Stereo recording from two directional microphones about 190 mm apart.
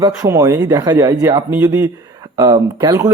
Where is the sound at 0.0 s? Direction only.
15° right (ahead or behind).